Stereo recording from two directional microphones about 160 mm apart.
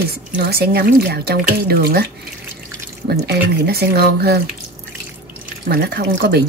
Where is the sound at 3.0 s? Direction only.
85° right.